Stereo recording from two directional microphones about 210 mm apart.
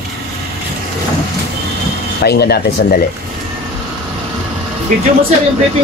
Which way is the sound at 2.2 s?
50° left (ahead or behind).